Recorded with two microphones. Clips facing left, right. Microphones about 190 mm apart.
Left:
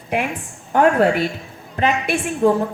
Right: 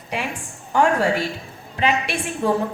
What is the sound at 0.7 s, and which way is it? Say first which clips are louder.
A woman's voice: left 4 dB; 55° left (ahead or behind).